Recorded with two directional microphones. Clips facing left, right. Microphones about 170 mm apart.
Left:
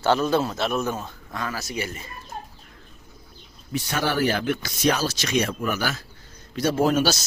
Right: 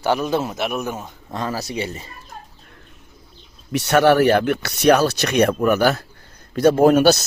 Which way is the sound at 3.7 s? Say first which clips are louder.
Right 11 dB; 70° right (ahead or behind).